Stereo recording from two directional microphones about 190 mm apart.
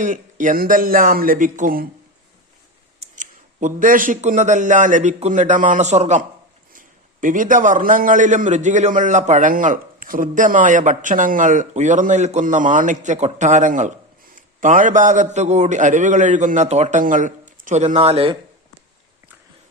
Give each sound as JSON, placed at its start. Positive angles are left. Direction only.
{"t": 0.0, "sound": "speech", "side_deg": -45}
{"t": 3.2, "sound": "a man's voice", "side_deg": -40}